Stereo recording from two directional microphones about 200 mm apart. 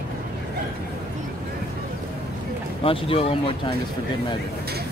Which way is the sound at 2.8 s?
30° left (ahead or behind).